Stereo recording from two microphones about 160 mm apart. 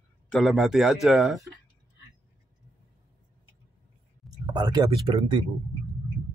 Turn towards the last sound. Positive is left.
turn(degrees=-30)  # may be behind; listen again after turning